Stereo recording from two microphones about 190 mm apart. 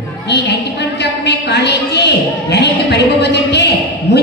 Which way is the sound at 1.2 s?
65° left (ahead or behind).